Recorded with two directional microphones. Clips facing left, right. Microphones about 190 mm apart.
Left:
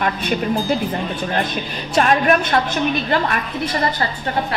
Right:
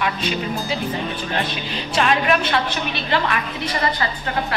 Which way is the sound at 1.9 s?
45° left (ahead or behind).